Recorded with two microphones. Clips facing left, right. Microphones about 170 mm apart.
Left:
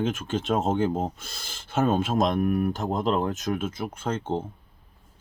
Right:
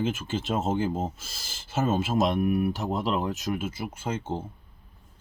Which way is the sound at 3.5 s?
10° right (ahead or behind).